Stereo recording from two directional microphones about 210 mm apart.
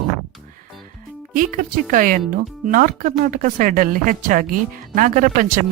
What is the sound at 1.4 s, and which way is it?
Speech, 40° right (ahead or behind).